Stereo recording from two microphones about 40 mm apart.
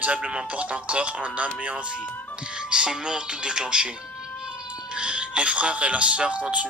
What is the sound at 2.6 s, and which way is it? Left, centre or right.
Speech, right.